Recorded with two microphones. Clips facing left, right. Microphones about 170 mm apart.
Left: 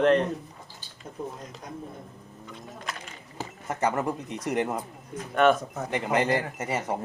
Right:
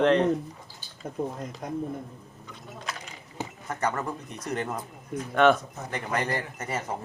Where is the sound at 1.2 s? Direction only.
50° right (ahead or behind).